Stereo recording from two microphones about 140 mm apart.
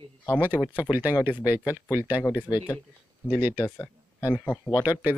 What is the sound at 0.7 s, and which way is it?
Speech, 10° right (ahead or behind).